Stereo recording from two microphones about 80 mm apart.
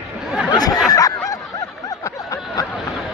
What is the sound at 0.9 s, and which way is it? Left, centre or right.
Snicker, left.